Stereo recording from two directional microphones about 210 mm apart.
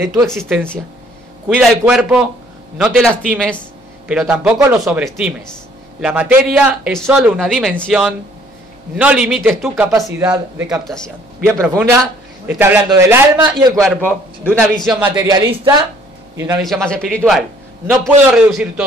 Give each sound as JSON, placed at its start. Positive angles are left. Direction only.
{"t": 0.0, "sound": "a man's voice", "side_deg": -15}
{"t": 1.5, "sound": "a man's voice", "side_deg": 0}
{"t": 9.8, "sound": "a man's voice", "side_deg": -15}
{"t": 14.5, "sound": "a man's voice", "side_deg": 0}
{"t": 15.1, "sound": "a man's voice", "side_deg": -20}
{"t": 16.6, "sound": "a man's voice", "side_deg": 0}